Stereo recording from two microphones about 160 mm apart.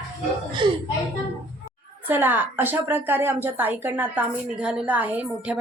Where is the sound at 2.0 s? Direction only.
10° right (ahead or behind).